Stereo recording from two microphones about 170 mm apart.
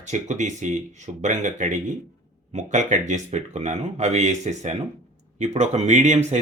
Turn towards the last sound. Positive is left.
turn(degrees=-40)  # may be behind; listen again after turning